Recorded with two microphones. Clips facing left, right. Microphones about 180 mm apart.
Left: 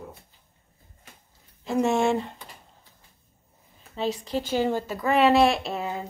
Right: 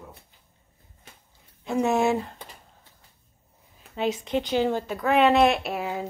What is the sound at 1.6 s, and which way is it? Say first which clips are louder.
Speech: even; centre (ahead or behind).